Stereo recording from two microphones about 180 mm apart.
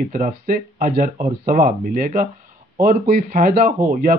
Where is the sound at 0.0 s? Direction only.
50° right (ahead or behind).